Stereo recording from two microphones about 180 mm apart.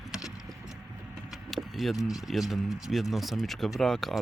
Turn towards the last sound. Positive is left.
turn(degrees=0)  # may be behind; listen again after turning